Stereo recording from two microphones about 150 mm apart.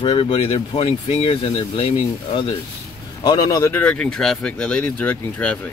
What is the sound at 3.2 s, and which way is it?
Speech, 25° left (ahead or behind).